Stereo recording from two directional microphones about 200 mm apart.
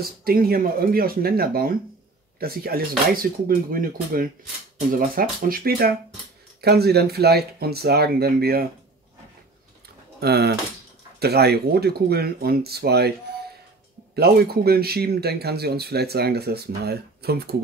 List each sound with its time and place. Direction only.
0.2 s speech: 50° right (ahead or behind)
10.2 s speech: 55° right (ahead or behind)
14.1 s speech: 50° right (ahead or behind)